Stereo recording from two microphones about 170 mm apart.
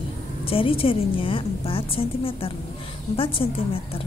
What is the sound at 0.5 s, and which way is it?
A woman's voice, 30° left (ahead or behind).